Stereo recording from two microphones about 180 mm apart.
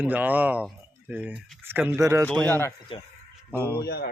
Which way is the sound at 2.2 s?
5° left (ahead or behind).